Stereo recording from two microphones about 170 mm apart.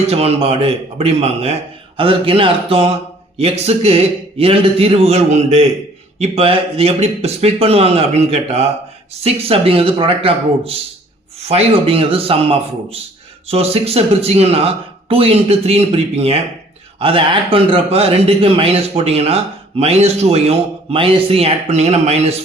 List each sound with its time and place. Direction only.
0.1 s a man's voice: 35° right (ahead or behind)